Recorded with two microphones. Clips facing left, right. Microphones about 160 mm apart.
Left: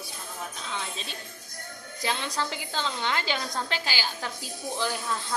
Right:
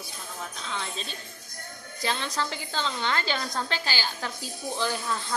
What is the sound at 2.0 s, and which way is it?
A woman's voice, 10° left (ahead or behind).